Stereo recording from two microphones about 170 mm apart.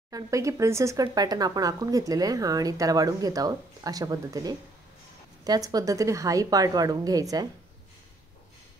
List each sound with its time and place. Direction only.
0.1 s speech: 20° right (ahead or behind)